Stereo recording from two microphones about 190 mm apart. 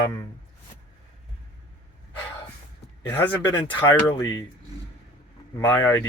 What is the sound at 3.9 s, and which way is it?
Speech, 15° left (ahead or behind).